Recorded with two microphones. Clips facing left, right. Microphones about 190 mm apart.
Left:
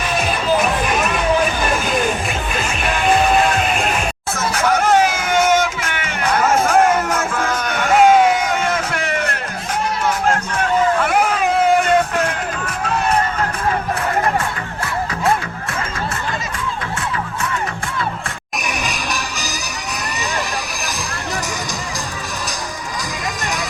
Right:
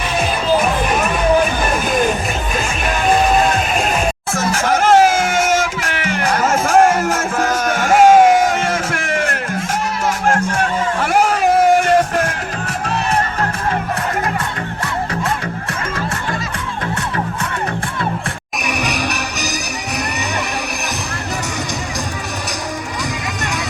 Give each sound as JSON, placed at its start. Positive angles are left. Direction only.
{"t": 4.4, "sound": "music", "side_deg": -45}
{"t": 11.1, "sound": "a sound", "side_deg": -45}
{"t": 18.8, "sound": "music", "side_deg": -65}